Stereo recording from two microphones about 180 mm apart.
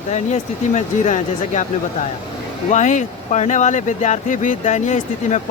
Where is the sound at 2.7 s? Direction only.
40° left (ahead or behind).